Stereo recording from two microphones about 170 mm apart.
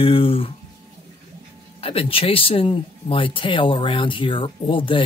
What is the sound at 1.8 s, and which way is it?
Speech, 35° left (ahead or behind).